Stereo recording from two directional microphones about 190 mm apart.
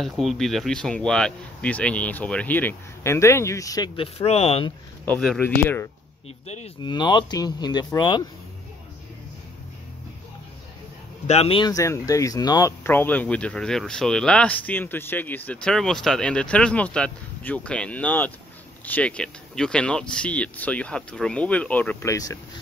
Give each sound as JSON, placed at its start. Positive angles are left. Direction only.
{"t": 0.0, "sound": "speech", "side_deg": 0}
{"t": 5.0, "sound": "speech", "side_deg": 5}
{"t": 6.4, "sound": "speech", "side_deg": 35}
{"t": 6.8, "sound": "speech", "side_deg": 25}
{"t": 11.2, "sound": "speech", "side_deg": 30}